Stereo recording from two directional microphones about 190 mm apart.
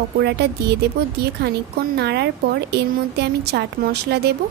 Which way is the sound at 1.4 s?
60° right (ahead or behind).